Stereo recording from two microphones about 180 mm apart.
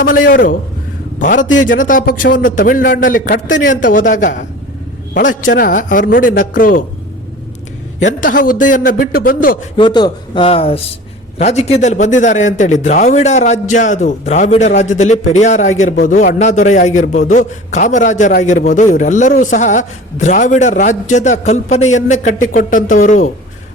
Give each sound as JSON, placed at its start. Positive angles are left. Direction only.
{"t": 0.0, "sound": "a man's voice", "side_deg": 50}
{"t": 5.5, "sound": "a man's voice", "side_deg": 50}
{"t": 8.0, "sound": "a man's voice", "side_deg": 50}
{"t": 9.7, "sound": "a man's voice", "side_deg": 25}